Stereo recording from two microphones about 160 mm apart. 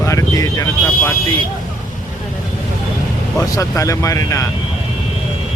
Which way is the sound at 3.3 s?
20° left (ahead or behind).